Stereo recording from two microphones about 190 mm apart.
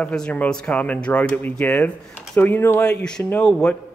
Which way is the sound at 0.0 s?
5° left (ahead or behind).